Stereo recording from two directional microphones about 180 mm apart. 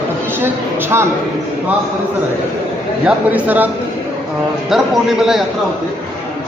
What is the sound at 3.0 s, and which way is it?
A woman's voice, 10° right (ahead or behind).